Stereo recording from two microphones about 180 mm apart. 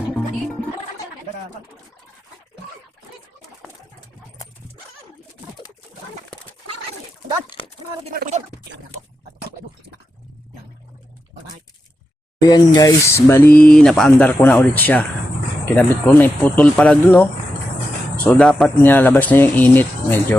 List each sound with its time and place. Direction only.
8.1 s speech: 50° right (ahead or behind)
12.5 s speech: 20° left (ahead or behind)